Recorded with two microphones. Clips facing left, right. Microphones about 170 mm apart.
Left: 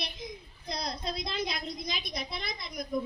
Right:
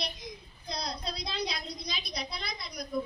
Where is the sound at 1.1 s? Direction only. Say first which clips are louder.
Left 3 dB; 50° left (ahead or behind).